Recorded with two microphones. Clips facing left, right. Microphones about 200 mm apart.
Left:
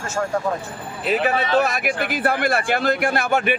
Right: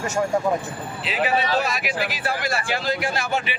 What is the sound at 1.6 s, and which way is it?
A man's voice, 55° left (ahead or behind).